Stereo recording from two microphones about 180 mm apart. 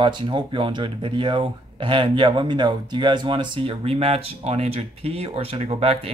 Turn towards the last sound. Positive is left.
turn(degrees=-30)  # may be behind; listen again after turning